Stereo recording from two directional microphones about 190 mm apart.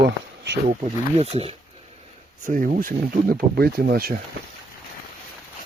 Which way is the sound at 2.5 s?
45° right (ahead or behind).